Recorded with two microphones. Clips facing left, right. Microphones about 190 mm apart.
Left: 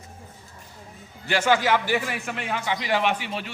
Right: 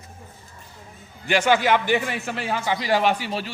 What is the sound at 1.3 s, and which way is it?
A man's voice, 15° right (ahead or behind).